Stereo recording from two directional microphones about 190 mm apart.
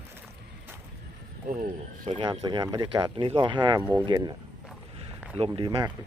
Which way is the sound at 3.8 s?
10° right (ahead or behind).